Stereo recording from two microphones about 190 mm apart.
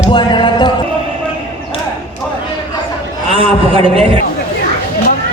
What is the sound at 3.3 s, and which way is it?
Speech, 30° right (ahead or behind).